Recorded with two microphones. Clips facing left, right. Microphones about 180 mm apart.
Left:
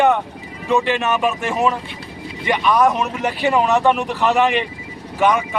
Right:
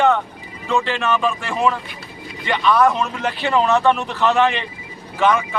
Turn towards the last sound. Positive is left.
turn(degrees=15)  # may be behind; listen again after turning